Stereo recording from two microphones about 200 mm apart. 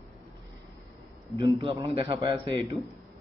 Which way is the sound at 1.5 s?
30° right (ahead or behind).